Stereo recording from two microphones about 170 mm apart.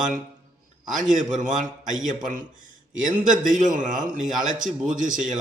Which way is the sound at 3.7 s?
50° right (ahead or behind).